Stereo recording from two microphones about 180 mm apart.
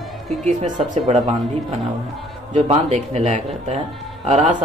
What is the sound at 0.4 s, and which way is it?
Speech, 40° right (ahead or behind).